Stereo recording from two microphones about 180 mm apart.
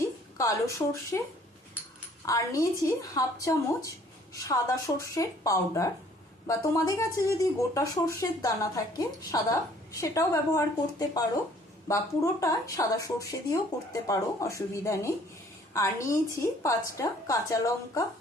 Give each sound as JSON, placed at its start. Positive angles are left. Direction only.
{"t": 0.3, "sound": "a woman's voice", "side_deg": 15}
{"t": 2.2, "sound": "a woman's voice", "side_deg": 20}